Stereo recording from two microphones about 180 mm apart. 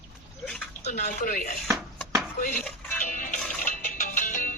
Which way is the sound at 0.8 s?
40° left (ahead or behind).